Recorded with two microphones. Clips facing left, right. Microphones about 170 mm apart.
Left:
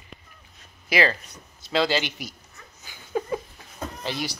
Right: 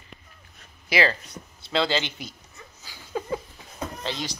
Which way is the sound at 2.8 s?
20° left (ahead or behind).